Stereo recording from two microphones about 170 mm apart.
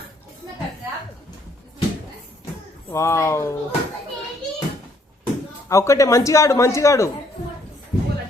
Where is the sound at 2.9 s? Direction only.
15° left (ahead or behind).